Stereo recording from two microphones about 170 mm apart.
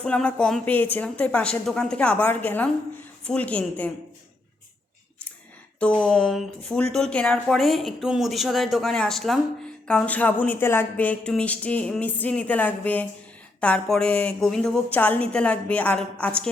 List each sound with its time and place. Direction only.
0.0 s speech: 5° left (ahead or behind)
5.8 s speech: 5° left (ahead or behind)